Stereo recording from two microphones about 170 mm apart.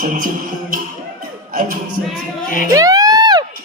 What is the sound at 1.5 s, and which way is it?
Music, 55° right (ahead or behind).